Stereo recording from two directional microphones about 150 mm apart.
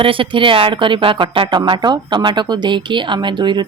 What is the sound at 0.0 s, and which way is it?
A woman's voice, 35° right (ahead or behind).